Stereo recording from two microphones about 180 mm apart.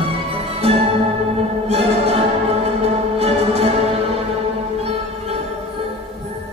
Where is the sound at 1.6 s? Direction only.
35° right (ahead or behind).